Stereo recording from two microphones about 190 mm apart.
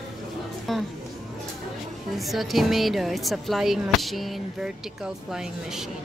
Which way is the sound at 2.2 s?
Centre (ahead or behind).